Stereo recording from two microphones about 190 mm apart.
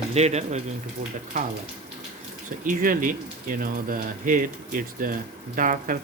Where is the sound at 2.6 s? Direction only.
45° right (ahead or behind).